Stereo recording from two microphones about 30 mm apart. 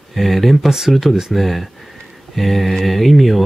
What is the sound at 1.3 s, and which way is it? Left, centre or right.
Speech, centre.